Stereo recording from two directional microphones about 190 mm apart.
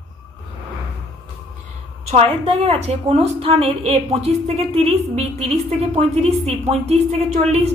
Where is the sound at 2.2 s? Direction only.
30° right (ahead or behind).